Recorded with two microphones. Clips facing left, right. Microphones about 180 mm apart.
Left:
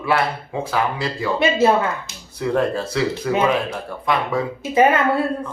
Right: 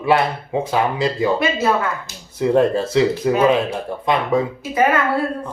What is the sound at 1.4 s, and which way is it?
Speech, 25° left (ahead or behind).